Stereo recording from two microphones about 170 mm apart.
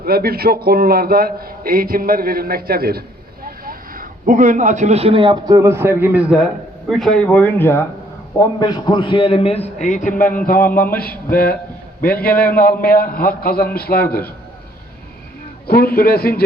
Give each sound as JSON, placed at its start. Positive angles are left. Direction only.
{"t": 0.0, "sound": "a man's voice", "side_deg": -65}
{"t": 8.4, "sound": "a man's voice", "side_deg": 25}
{"t": 15.6, "sound": "a man's voice", "side_deg": 65}